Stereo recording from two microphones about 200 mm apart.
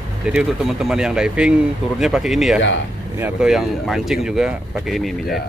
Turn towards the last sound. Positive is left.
turn(degrees=0)  # may be behind; listen again after turning